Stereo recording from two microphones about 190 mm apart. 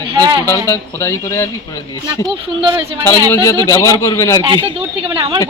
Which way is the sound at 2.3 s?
25° right (ahead or behind).